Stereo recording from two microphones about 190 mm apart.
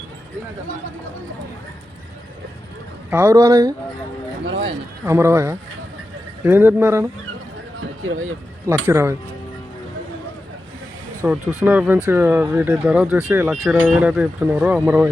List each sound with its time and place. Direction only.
3.1 s speech: 15° right (ahead or behind)
4.4 s a sound: 70° right (ahead or behind)
5.0 s speech: 15° right (ahead or behind)
8.0 s speech: 90° right
8.6 s speech: 15° right (ahead or behind)
11.2 s speech: 10° right (ahead or behind)